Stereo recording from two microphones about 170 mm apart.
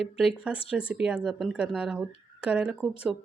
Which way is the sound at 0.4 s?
5° right (ahead or behind).